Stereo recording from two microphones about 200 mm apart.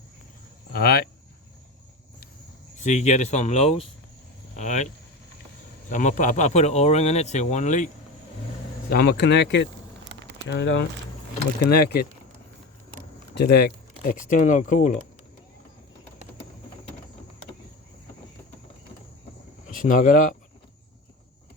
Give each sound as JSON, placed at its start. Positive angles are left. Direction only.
{"t": 0.7, "sound": "speech", "side_deg": 50}
{"t": 2.7, "sound": "speech", "side_deg": 35}
{"t": 5.9, "sound": "speech", "side_deg": 40}
{"t": 8.9, "sound": "speech", "side_deg": 50}
{"t": 10.1, "sound": "a sound", "side_deg": -60}
{"t": 10.5, "sound": "speech", "side_deg": 65}
{"t": 13.3, "sound": "speech", "side_deg": 55}
{"t": 19.6, "sound": "speech", "side_deg": 40}